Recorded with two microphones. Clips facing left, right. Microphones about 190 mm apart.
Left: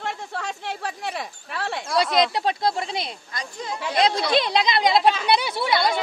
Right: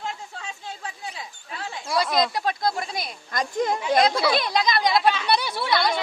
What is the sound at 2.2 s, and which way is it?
Speech, 25° left (ahead or behind).